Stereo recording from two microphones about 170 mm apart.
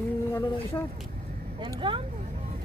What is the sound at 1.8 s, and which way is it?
Speech, 25° right (ahead or behind).